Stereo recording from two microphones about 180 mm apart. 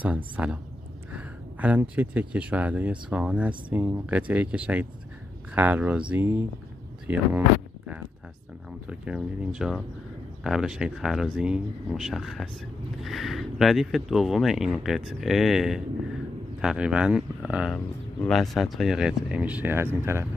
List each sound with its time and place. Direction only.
0.0 s speech: 5° right (ahead or behind)
7.1 s a sound: 10° right (ahead or behind)
8.6 s speech: 5° right (ahead or behind)